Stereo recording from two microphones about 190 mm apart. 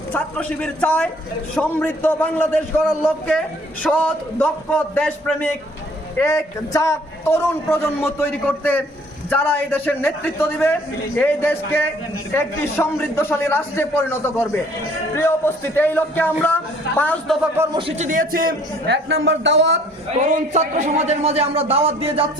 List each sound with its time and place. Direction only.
0.1 s a man's voice: 5° left (ahead or behind)
17.7 s a man's voice: 35° right (ahead or behind); by 18.9 s 50° right (ahead or behind)
19.0 s speech: 70° right (ahead or behind)
20.1 s a man's voice: 40° right (ahead or behind)